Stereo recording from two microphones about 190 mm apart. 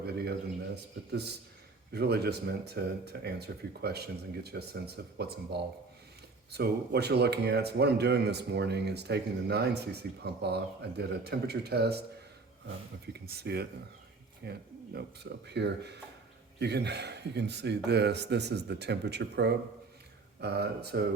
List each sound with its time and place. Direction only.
0.0 s a sound: 55° right (ahead or behind)
1.9 s speech: 60° right (ahead or behind)
13.1 s speech: 55° right (ahead or behind)